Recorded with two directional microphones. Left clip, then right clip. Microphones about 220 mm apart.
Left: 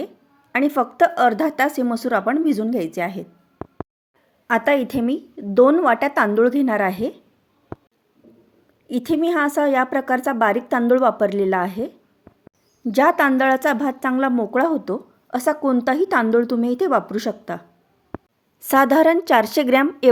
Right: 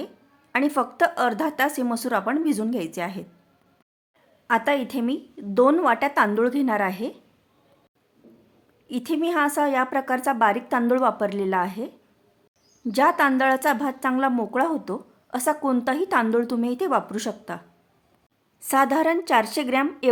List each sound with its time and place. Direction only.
0.5 s a woman's voice: 10° left (ahead or behind)
4.4 s a woman's voice: 15° left (ahead or behind)
8.9 s a woman's voice: 10° left (ahead or behind)
18.6 s a woman's voice: 15° left (ahead or behind)